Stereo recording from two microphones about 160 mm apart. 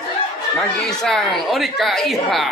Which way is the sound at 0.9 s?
5° left (ahead or behind).